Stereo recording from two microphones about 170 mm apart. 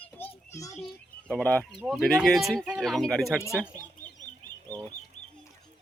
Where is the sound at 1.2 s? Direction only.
5° left (ahead or behind).